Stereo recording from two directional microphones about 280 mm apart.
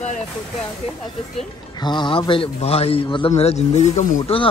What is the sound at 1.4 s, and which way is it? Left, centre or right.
A man's voice, centre.